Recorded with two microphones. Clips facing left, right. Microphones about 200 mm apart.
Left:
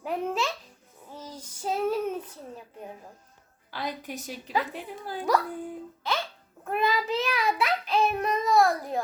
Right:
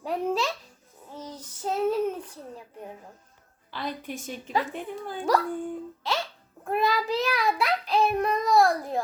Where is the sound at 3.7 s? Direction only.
45° left (ahead or behind).